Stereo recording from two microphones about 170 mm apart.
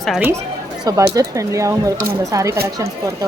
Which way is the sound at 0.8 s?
20° right (ahead or behind).